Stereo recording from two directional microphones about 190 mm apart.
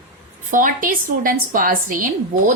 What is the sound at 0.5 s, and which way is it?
A woman's voice, 45° right (ahead or behind).